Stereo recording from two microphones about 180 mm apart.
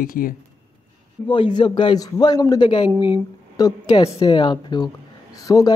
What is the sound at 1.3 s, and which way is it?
Speech, 25° left (ahead or behind).